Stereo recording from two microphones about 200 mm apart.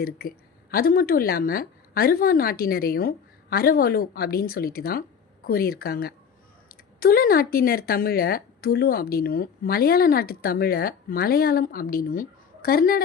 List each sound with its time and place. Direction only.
0.0 s speech: 50° left (ahead or behind)